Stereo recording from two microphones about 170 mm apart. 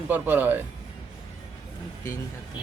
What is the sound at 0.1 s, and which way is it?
Speech, 10° right (ahead or behind).